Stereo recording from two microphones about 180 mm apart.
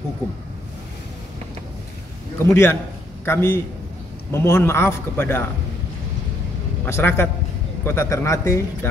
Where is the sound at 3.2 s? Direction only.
15° left (ahead or behind).